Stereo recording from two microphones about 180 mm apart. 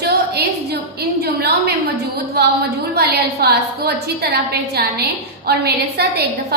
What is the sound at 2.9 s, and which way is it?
A woman's voice, 60° right (ahead or behind).